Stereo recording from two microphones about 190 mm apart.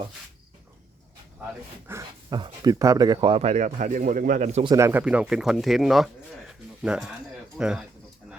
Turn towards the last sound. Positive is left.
turn(degrees=-5)  # may be behind; listen again after turning